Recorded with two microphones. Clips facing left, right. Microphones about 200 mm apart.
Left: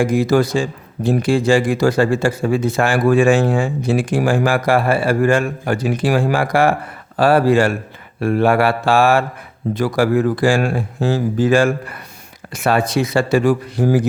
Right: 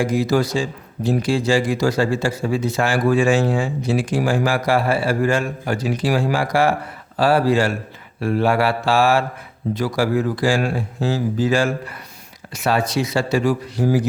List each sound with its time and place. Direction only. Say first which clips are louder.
0.0 s a man's voice: left 3 dB; 55° left (ahead or behind)